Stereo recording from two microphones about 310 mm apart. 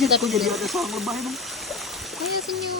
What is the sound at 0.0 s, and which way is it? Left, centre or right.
Speech, centre.